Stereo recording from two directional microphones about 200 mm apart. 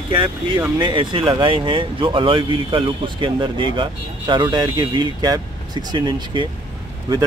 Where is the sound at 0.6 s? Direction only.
20° right (ahead or behind).